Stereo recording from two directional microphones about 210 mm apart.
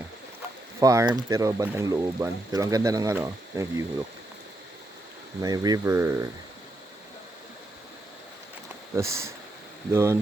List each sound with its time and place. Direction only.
0.8 s speech: 15° right (ahead or behind)
5.4 s speech: 20° right (ahead or behind)
9.0 s speech: 15° right (ahead or behind)